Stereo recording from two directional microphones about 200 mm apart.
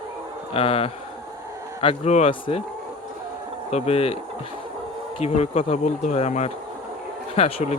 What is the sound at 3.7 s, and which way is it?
Speech, 30° left (ahead or behind).